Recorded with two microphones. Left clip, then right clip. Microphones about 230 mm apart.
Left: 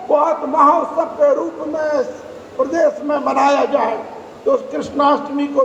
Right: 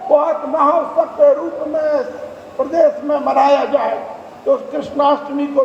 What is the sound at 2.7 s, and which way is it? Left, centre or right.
A man's voice, left.